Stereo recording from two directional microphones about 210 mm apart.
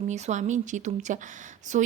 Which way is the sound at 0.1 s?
35° right (ahead or behind).